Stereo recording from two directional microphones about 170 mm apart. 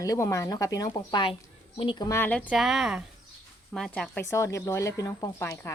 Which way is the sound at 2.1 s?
10° left (ahead or behind).